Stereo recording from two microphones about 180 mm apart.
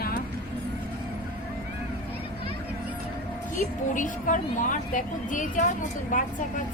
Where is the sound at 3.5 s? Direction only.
45° left (ahead or behind).